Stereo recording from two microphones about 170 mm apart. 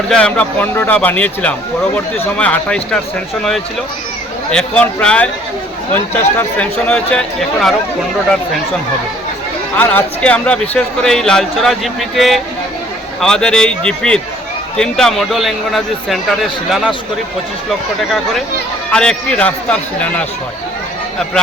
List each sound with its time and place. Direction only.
0.1 s a man's voice: 5° left (ahead or behind)
4.5 s a man's voice: 5° left (ahead or behind)
9.7 s speech: 10° left (ahead or behind)